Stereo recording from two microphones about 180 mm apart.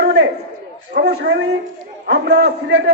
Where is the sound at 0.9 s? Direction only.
65° right (ahead or behind).